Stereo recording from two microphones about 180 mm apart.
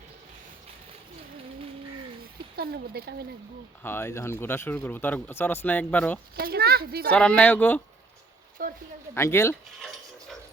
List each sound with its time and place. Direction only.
2.6 s a woman's voice: 60° right (ahead or behind)
3.8 s speech: 15° left (ahead or behind)
6.3 s a woman's voice: 60° right (ahead or behind)
7.1 s speech: 5° left (ahead or behind)
8.6 s speech: 55° right (ahead or behind)
9.1 s speech: 15° left (ahead or behind)